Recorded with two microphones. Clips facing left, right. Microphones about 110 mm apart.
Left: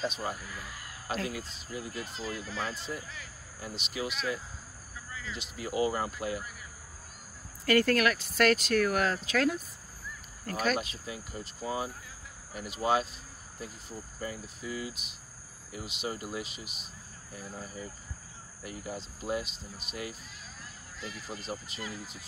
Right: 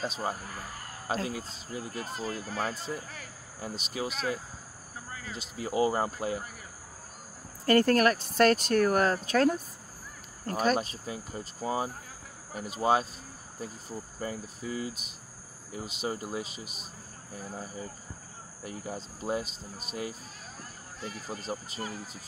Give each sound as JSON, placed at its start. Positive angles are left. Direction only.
{"t": 0.0, "sound": "speech", "side_deg": -35}
{"t": 5.1, "sound": "a sound", "side_deg": -45}
{"t": 5.6, "sound": "speech", "side_deg": -30}
{"t": 7.6, "sound": "speech", "side_deg": -35}
{"t": 18.6, "sound": "speech", "side_deg": -35}